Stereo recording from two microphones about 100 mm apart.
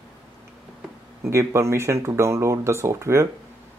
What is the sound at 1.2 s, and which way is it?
Speech, 25° right (ahead or behind).